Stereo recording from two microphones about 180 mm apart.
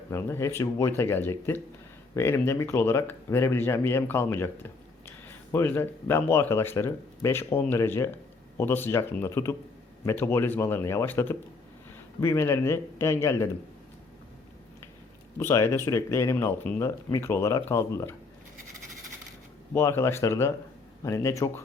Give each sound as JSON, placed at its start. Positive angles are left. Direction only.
{"t": 0.1, "sound": "speech", "side_deg": 15}
{"t": 15.4, "sound": "speech", "side_deg": 15}
{"t": 19.7, "sound": "speech", "side_deg": 15}